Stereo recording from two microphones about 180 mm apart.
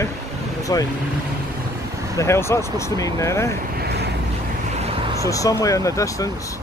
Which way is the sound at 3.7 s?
65° right (ahead or behind).